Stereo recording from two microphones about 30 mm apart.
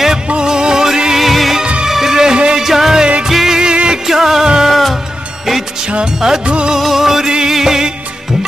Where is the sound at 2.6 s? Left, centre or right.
Centre.